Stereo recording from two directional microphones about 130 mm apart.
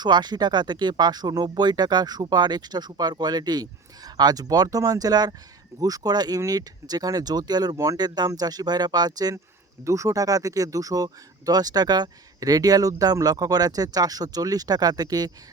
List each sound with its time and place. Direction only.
0.0 s speech: 35° right (ahead or behind)